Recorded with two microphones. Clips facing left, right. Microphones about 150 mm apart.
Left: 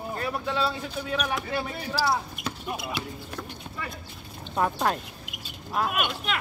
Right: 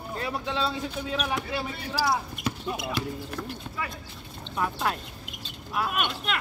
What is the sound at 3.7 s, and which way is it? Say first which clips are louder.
Clip-clop: right 2 dB; 15° left (ahead or behind).